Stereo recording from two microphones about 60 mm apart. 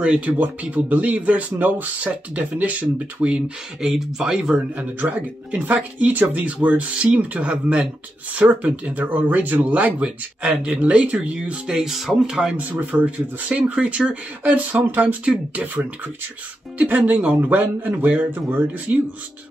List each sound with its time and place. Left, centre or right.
0.0 s speech: centre
4.7 s speech: right; by 12.5 s centre
12.5 s speech: right